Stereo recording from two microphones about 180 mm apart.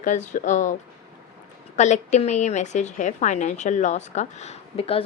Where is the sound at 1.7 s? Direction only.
40° left (ahead or behind).